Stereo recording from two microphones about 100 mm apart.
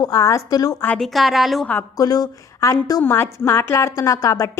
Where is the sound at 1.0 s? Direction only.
Centre (ahead or behind).